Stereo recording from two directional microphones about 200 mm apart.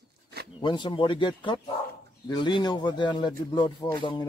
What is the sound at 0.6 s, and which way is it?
A man's voice, 25° left (ahead or behind).